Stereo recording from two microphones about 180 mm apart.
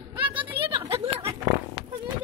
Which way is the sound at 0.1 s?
30° right (ahead or behind).